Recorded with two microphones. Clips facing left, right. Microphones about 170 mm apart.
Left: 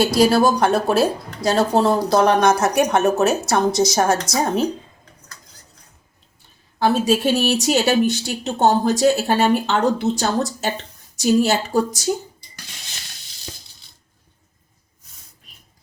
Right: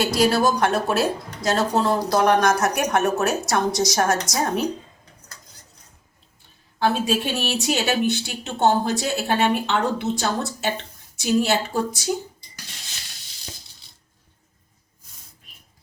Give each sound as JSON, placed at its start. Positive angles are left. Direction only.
{"t": 0.0, "sound": "a woman's voice", "side_deg": 35}
{"t": 6.7, "sound": "speech", "side_deg": 40}